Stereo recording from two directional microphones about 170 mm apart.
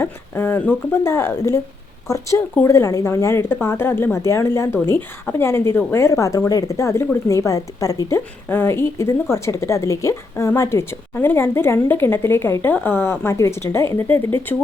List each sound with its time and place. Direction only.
0.0 s speech: 15° left (ahead or behind)